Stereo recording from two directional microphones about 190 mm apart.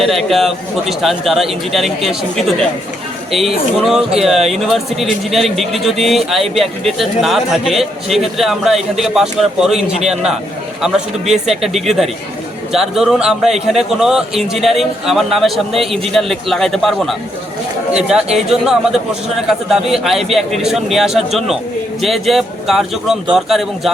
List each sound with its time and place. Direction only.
0.0 s a man's voice: centre (ahead or behind)